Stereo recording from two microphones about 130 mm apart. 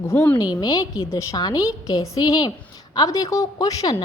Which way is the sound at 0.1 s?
15° left (ahead or behind).